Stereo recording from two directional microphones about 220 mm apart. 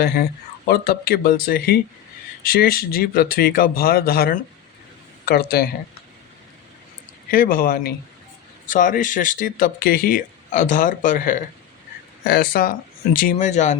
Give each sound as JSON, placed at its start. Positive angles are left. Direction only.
{"t": 0.0, "sound": "speech", "side_deg": 50}
{"t": 7.3, "sound": "speech", "side_deg": 40}